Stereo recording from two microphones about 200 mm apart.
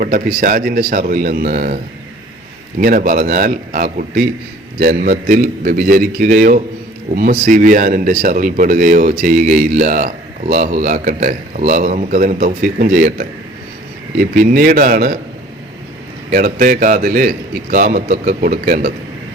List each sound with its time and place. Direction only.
0.0 s speech: 50° right (ahead or behind)
2.8 s speech: 45° right (ahead or behind)
16.3 s speech: 45° right (ahead or behind)